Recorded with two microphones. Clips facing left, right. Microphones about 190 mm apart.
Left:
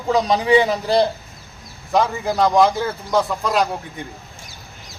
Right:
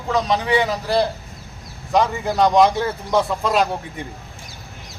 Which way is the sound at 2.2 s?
5° left (ahead or behind).